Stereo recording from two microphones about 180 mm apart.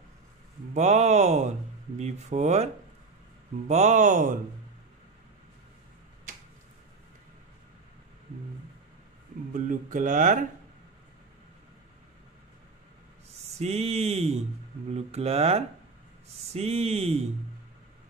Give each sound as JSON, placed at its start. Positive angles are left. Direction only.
{"t": 0.7, "sound": "speech", "side_deg": -40}
{"t": 9.5, "sound": "speech", "side_deg": -45}
{"t": 13.6, "sound": "speech", "side_deg": -35}